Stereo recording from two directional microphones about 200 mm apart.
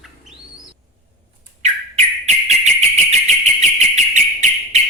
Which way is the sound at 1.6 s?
35° right (ahead or behind).